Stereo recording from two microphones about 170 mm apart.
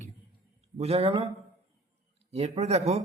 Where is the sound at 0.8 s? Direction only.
35° right (ahead or behind).